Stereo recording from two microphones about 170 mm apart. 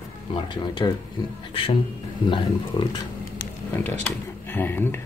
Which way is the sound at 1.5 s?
30° left (ahead or behind).